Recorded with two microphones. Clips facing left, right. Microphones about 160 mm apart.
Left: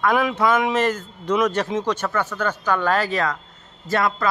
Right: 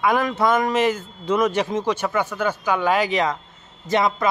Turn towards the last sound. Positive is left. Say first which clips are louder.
# right 2 dB
turn(degrees=-20)  # may be behind; listen again after turning